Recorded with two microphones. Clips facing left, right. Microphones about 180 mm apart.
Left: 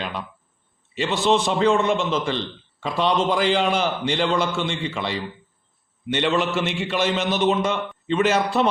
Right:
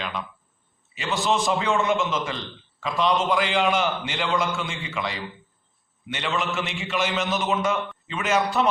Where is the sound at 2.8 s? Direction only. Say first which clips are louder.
Left 1 dB; 30° left (ahead or behind).